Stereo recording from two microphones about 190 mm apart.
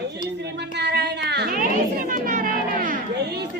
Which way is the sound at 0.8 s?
60° right (ahead or behind).